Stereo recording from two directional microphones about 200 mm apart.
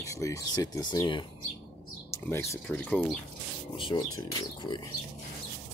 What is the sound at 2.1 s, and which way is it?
Speech, 10° left (ahead or behind).